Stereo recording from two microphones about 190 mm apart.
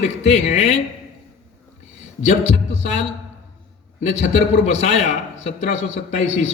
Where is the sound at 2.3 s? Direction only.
35° left (ahead or behind).